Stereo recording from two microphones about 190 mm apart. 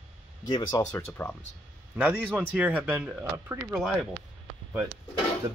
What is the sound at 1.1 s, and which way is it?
Speech, 10° left (ahead or behind).